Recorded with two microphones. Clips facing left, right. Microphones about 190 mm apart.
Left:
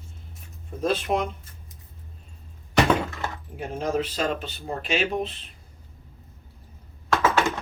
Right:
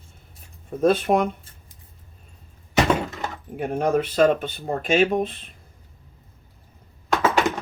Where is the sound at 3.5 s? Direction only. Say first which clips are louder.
Right 5 dB; 60° right (ahead or behind).